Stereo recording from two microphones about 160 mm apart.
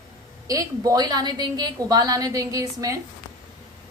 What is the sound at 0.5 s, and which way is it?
A woman's voice, 20° right (ahead or behind).